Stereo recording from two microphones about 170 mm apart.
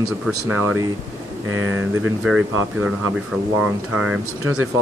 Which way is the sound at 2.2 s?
5° right (ahead or behind).